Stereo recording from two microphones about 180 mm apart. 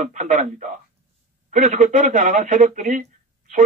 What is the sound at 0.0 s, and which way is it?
Speech, 40° right (ahead or behind).